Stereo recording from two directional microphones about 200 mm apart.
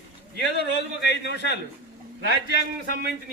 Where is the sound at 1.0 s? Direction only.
60° left (ahead or behind).